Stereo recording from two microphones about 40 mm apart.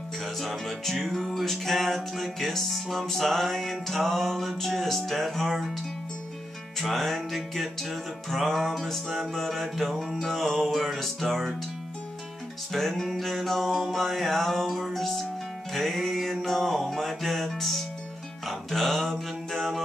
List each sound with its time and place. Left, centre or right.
0.4 s music: centre
6.8 s music: centre
12.7 s music: centre
18.5 s mantra: centre